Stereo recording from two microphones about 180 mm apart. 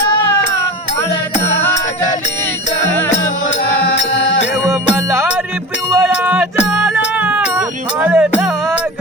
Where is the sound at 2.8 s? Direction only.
80° left.